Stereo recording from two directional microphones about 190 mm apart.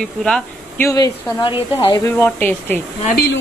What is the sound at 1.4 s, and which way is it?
A woman's voice, 25° left (ahead or behind).